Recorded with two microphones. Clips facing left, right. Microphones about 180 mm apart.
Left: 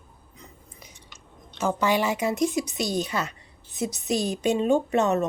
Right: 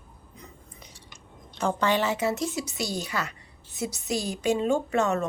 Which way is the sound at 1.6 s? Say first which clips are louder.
Left 1 dB; 5° left (ahead or behind).